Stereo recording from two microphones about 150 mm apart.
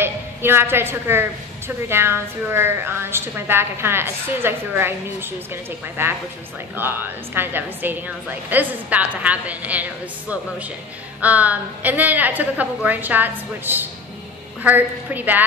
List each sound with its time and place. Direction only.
0.0 s a woman's voice: 15° right (ahead or behind)
11.1 s a woman's voice: 10° right (ahead or behind)